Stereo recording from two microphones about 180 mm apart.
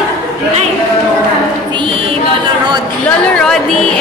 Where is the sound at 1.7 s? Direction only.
30° right (ahead or behind).